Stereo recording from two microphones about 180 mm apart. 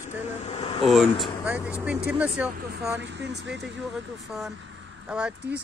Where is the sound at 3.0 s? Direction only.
75° right (ahead or behind).